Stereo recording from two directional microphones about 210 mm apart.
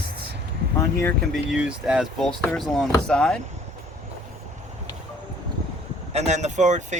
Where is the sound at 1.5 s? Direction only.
5° right (ahead or behind).